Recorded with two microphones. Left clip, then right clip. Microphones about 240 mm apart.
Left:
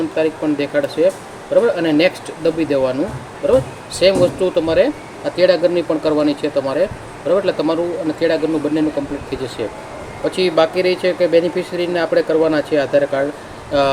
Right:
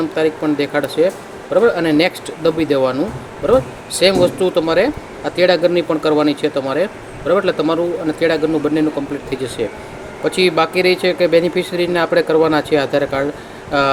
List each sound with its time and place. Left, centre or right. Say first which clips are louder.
0.2 s speech: right 1 dB; centre